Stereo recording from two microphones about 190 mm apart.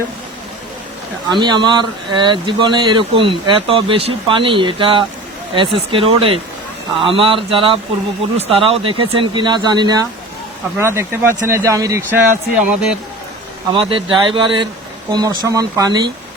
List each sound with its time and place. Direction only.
1.3 s speech: 25° right (ahead or behind)
12.1 s speech: 5° right (ahead or behind)
13.7 s speech: 25° right (ahead or behind)